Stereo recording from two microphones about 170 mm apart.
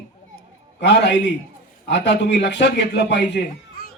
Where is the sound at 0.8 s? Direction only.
90° left.